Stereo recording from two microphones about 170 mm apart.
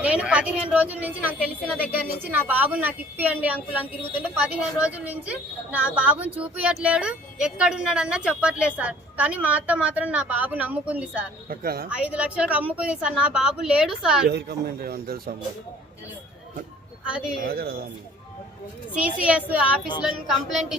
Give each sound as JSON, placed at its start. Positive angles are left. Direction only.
{"t": 0.0, "sound": "a woman's voice", "side_deg": -5}
{"t": 11.4, "sound": "speech", "side_deg": -60}
{"t": 11.9, "sound": "a woman's voice", "side_deg": -5}
{"t": 14.3, "sound": "speech", "side_deg": -75}
{"t": 17.4, "sound": "speech", "side_deg": -65}
{"t": 18.9, "sound": "a woman's voice", "side_deg": -5}